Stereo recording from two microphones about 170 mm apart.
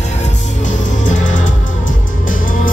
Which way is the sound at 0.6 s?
45° left (ahead or behind).